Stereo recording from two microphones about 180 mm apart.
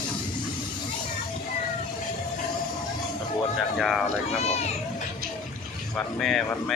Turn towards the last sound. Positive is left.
turn(degrees=0)  # may be behind; listen again after turning